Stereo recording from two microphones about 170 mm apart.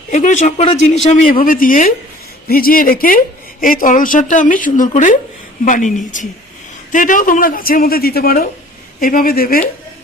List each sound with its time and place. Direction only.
0.1 s speech: 45° left (ahead or behind)
1.1 s speech: 55° left (ahead or behind)